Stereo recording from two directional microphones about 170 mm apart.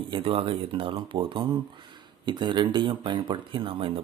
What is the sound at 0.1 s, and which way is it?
Speech, 35° right (ahead or behind).